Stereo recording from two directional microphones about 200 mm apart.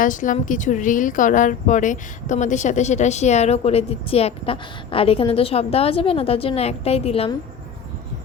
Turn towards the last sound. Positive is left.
turn(degrees=30)  # may be behind; listen again after turning